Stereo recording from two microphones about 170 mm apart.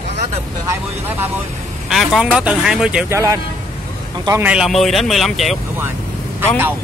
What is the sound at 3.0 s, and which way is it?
Speech, 15° right (ahead or behind).